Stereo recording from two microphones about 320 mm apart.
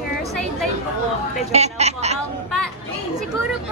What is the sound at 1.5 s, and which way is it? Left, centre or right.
Speech, centre.